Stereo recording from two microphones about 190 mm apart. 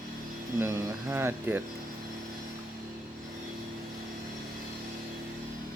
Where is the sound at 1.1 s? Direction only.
10° right (ahead or behind).